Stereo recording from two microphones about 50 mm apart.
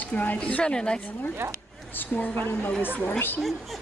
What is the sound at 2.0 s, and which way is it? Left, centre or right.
Speech, left.